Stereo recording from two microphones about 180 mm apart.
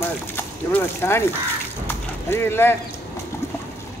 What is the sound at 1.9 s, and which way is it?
Clip-clop, 15° left (ahead or behind).